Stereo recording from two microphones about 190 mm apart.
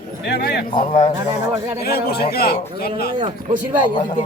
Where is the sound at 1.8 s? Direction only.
55° left (ahead or behind).